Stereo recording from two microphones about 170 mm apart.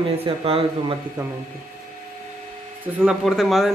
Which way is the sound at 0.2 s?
35° right (ahead or behind).